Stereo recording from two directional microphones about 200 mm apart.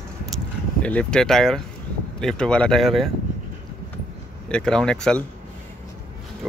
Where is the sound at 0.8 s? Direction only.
5° left (ahead or behind).